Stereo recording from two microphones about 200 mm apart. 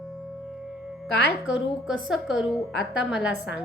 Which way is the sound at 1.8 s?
5° right (ahead or behind).